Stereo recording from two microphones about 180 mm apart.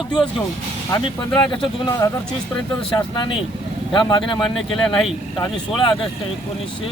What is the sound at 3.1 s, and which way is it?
Speech, 25° left (ahead or behind).